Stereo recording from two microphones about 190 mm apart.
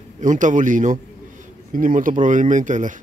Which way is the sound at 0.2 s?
40° right (ahead or behind).